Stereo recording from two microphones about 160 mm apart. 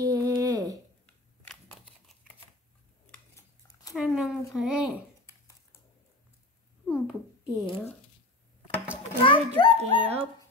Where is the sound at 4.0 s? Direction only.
5° right (ahead or behind).